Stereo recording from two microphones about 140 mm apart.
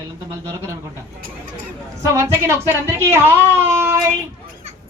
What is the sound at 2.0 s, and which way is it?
Speech, 20° right (ahead or behind).